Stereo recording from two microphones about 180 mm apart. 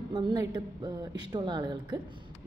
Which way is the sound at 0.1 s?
20° right (ahead or behind).